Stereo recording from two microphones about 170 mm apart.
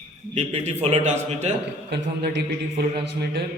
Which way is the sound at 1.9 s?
75° right (ahead or behind).